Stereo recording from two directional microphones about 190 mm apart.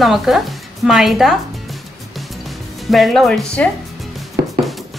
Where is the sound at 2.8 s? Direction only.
Centre (ahead or behind).